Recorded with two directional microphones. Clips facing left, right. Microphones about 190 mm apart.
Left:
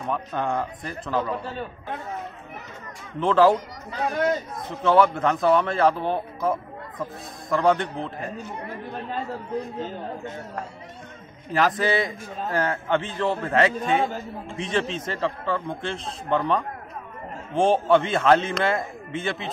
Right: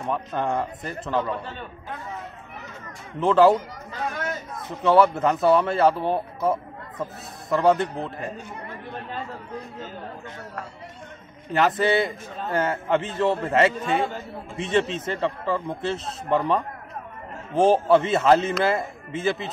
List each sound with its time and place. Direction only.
0.0 s a man's voice: centre (ahead or behind)
1.5 s speech: 35° left (ahead or behind)
3.2 s a man's voice: 5° right (ahead or behind)
4.8 s a man's voice: 5° right (ahead or behind)
11.5 s a man's voice: centre (ahead or behind)